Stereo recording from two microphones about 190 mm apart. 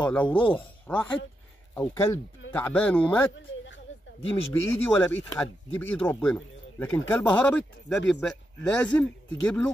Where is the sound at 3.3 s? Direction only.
75° left (ahead or behind).